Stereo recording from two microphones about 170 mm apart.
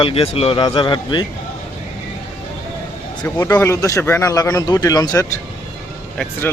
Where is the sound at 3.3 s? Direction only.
20° left (ahead or behind).